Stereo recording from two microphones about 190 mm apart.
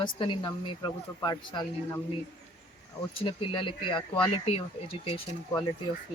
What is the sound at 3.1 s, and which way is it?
Speech, 30° left (ahead or behind).